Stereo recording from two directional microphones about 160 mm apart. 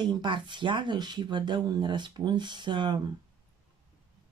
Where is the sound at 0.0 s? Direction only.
30° right (ahead or behind).